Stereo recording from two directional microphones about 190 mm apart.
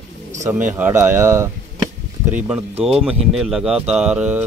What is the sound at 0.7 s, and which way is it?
Speech, 10° right (ahead or behind).